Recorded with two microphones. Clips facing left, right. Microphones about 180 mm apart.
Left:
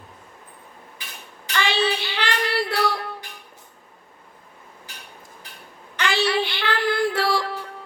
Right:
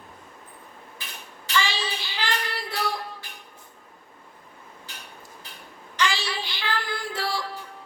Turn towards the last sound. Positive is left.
turn(degrees=70)  # may be behind; listen again after turning